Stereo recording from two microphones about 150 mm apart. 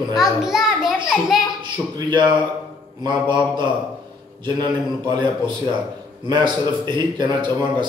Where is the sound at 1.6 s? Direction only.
30° right (ahead or behind).